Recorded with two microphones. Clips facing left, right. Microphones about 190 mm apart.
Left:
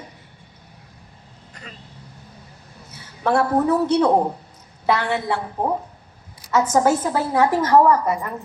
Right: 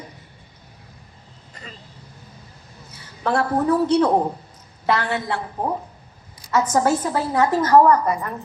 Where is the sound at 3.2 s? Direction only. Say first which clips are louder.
Left 2 dB; 10° left (ahead or behind).